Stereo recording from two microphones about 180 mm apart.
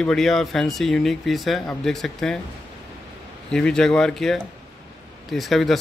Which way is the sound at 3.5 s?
5° left (ahead or behind).